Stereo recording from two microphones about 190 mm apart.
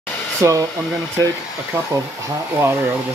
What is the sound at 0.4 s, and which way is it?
Speech, 15° right (ahead or behind).